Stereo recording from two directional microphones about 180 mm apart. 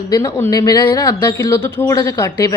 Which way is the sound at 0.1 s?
20° left (ahead or behind).